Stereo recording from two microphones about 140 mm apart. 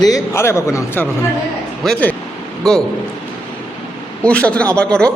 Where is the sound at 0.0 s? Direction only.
20° left (ahead or behind).